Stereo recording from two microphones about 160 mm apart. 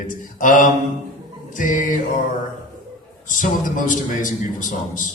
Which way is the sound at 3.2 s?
55° left (ahead or behind).